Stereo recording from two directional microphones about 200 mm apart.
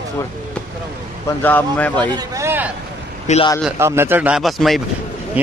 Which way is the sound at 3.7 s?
10° right (ahead or behind).